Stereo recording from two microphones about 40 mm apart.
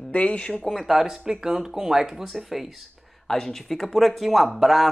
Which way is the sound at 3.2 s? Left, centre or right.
Centre.